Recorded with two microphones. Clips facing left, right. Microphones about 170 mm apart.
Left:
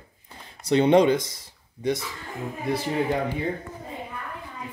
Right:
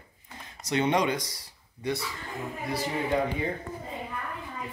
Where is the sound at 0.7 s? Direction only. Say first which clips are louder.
Left 8 dB; 30° left (ahead or behind).